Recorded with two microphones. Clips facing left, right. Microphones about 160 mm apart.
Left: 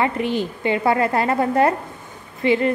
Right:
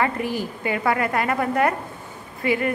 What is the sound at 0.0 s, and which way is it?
A woman's voice, 25° left (ahead or behind).